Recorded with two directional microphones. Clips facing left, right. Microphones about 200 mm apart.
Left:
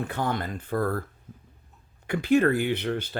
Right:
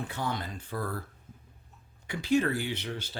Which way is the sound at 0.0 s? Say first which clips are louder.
Left 5 dB; 55° left (ahead or behind).